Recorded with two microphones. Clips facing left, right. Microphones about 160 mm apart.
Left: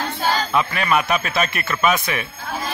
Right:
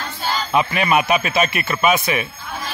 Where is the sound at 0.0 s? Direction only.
50° left (ahead or behind).